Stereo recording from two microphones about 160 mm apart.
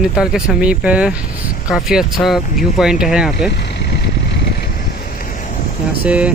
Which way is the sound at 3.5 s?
90° left.